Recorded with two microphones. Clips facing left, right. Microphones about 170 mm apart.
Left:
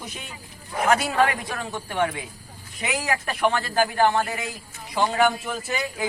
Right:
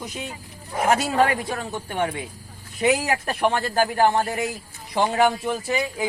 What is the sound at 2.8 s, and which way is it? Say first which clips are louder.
Speech: right 6 dB; 30° right (ahead or behind).